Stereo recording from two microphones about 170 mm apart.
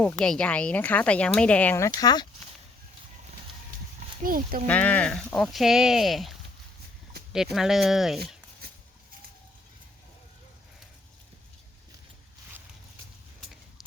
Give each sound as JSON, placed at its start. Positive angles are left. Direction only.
{"t": 0.0, "sound": "a woman's voice", "side_deg": 5}
{"t": 2.0, "sound": "speech", "side_deg": 25}
{"t": 4.2, "sound": "speech", "side_deg": -55}
{"t": 4.6, "sound": "speech", "side_deg": 10}
{"t": 7.5, "sound": "speech", "side_deg": 0}